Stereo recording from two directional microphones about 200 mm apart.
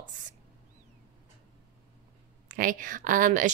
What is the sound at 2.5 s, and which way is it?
Speech, 40° right (ahead or behind).